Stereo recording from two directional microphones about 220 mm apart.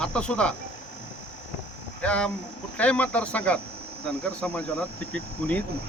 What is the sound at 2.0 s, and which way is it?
Speech, 5° left (ahead or behind).